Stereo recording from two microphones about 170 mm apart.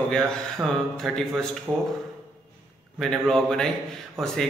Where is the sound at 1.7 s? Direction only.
20° right (ahead or behind).